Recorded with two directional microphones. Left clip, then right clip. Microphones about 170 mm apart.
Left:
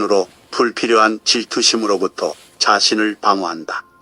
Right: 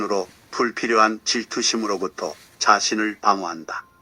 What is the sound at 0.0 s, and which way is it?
Speech, 30° left (ahead or behind).